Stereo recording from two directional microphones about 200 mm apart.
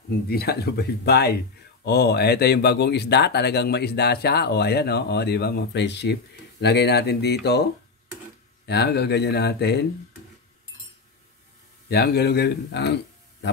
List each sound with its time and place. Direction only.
0.3 s speech: 50° left (ahead or behind)
8.6 s speech: 55° left (ahead or behind)
11.9 s speech: 55° left (ahead or behind)